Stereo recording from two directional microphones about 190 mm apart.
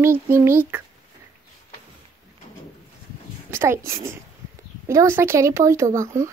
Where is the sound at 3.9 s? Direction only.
15° right (ahead or behind).